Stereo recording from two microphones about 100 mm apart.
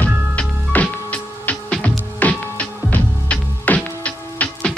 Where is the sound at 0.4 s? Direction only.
10° left (ahead or behind).